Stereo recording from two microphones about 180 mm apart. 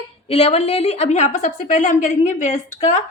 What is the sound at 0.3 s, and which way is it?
A woman's voice, 35° left (ahead or behind).